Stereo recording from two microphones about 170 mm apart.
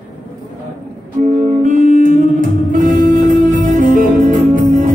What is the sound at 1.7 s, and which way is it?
Music, 50° right (ahead or behind).